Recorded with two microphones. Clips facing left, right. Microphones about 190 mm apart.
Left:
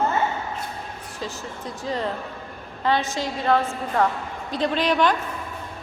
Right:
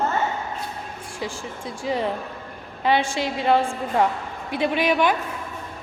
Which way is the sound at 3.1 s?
15° right (ahead or behind).